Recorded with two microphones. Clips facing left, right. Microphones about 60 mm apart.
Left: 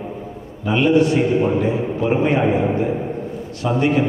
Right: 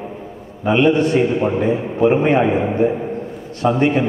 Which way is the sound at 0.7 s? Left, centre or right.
Right.